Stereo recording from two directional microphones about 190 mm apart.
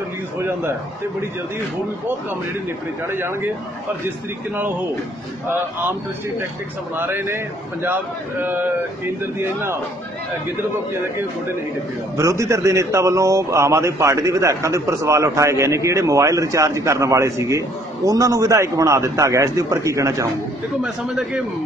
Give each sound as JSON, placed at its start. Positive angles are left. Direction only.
{"t": 0.4, "sound": "a man's voice", "side_deg": -15}
{"t": 3.1, "sound": "a man's voice", "side_deg": -10}
{"t": 7.0, "sound": "a man's voice", "side_deg": -10}
{"t": 12.2, "sound": "a man's voice", "side_deg": -15}
{"t": 20.8, "sound": "a man's voice", "side_deg": -5}